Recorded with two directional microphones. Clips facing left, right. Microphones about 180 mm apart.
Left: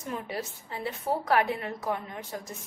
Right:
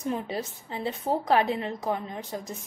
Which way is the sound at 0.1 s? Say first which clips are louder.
Even; 25° right (ahead or behind).